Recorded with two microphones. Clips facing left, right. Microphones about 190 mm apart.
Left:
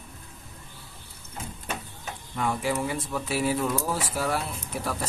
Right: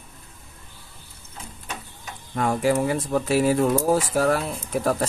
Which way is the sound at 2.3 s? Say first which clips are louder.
Right 6 dB; 45° right (ahead or behind).